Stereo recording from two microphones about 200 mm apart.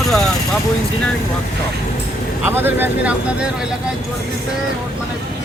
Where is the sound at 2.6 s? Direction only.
10° right (ahead or behind).